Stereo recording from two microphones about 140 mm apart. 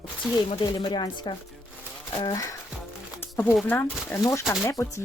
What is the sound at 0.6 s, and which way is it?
Speech, 30° left (ahead or behind).